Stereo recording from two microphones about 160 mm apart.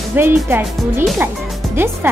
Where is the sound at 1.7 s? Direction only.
15° right (ahead or behind).